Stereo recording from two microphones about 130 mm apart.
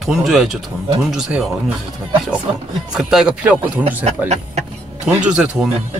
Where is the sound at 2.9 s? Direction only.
5° right (ahead or behind).